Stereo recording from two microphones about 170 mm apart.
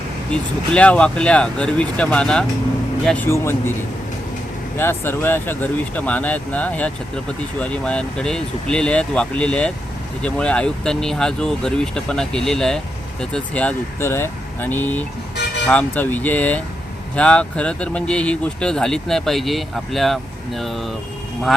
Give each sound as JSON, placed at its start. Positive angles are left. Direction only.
{"t": 0.3, "sound": "speech", "side_deg": 5}
{"t": 4.8, "sound": "speech", "side_deg": 10}